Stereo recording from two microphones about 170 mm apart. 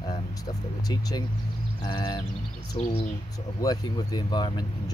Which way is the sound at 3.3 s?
20° left (ahead or behind).